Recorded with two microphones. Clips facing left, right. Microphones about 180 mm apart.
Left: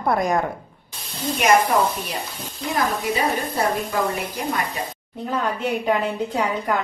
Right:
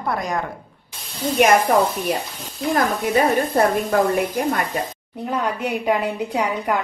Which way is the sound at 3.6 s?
55° right (ahead or behind).